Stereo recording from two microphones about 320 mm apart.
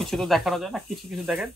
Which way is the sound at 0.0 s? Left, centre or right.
Centre.